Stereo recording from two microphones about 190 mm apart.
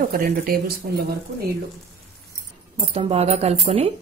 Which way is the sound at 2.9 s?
30° right (ahead or behind).